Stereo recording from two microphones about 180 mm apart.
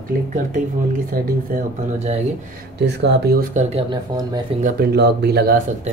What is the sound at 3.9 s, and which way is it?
Speech, 20° right (ahead or behind).